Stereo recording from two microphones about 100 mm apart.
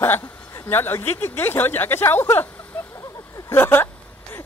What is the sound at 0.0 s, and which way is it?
Speech, 25° left (ahead or behind).